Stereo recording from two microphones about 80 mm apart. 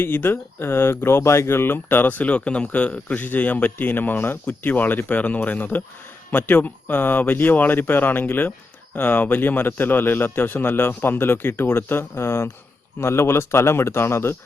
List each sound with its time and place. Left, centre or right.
0.0 s speech: left